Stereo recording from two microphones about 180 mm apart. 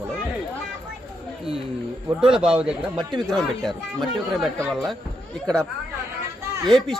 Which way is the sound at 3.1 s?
25° right (ahead or behind).